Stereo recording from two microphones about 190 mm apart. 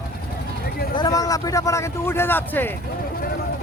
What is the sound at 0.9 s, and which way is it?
Speech, 20° left (ahead or behind).